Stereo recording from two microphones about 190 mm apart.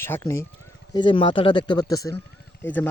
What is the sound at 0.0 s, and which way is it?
Speech, 15° left (ahead or behind).